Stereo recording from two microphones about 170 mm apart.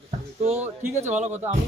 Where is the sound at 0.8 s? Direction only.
15° right (ahead or behind).